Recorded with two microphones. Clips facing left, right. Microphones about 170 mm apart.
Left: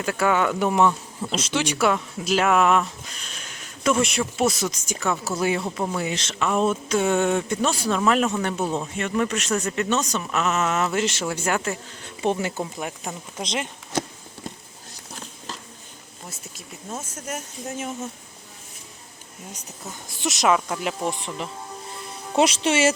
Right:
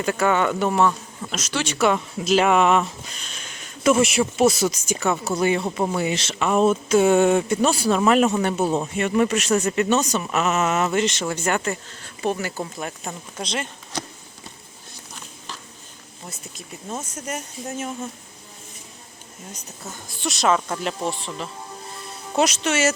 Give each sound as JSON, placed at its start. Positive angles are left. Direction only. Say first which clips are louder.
{"t": 0.0, "sound": "speech", "louder": "right 1 dB", "side_deg": 5}
{"t": 1.3, "sound": "speech", "louder": "left 2 dB", "side_deg": 25}
{"t": 1.6, "sound": "speech", "louder": "right 3 dB", "side_deg": 10}
{"t": 2.4, "sound": "speech", "louder": "even", "side_deg": 0}
{"t": 5.6, "sound": "speech", "louder": "right 3 dB", "side_deg": -10}
{"t": 10.9, "sound": "speech", "louder": "right 2 dB", "side_deg": 5}
{"t": 12.0, "sound": "speech", "louder": "left 1 dB", "side_deg": 20}
{"t": 17.2, "sound": "speech", "louder": "right 2 dB", "side_deg": 0}
{"t": 20.1, "sound": "speech", "louder": "even", "side_deg": 20}
{"t": 22.4, "sound": "speech", "louder": "left 1 dB", "side_deg": 30}